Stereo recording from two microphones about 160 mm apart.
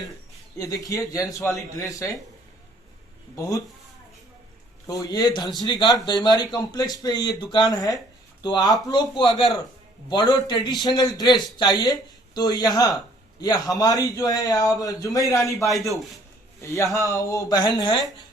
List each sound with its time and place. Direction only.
0.6 s a man's voice: 20° left (ahead or behind)
4.9 s a man's voice: 20° left (ahead or behind)
15.7 s a man's voice: centre (ahead or behind)
16.6 s a man's voice: 20° left (ahead or behind)